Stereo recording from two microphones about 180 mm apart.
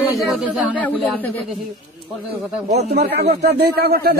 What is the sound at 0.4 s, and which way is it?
Speech, centre (ahead or behind).